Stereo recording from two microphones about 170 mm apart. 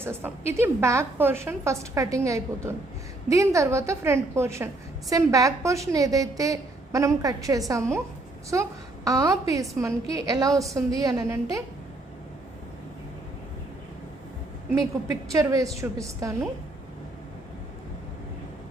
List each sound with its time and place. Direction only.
0.0 s a woman's voice: 15° right (ahead or behind)
9.0 s a woman's voice: 20° right (ahead or behind)
15.1 s a woman's voice: 20° right (ahead or behind)